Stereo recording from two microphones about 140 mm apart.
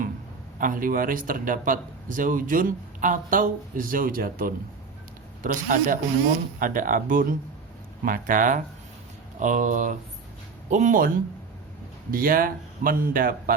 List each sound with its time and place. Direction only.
0.6 s speech: 75° right (ahead or behind)
5.4 s speech: 75° right (ahead or behind)
12.1 s speech: 90° right